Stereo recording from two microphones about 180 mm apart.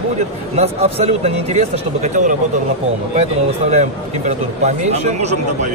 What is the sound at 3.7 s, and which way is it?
A man's voice, 40° right (ahead or behind).